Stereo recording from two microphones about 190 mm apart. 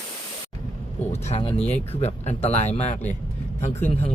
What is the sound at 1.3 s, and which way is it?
Speech, 30° left (ahead or behind).